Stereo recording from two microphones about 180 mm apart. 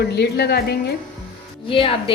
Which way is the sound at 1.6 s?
30° left (ahead or behind).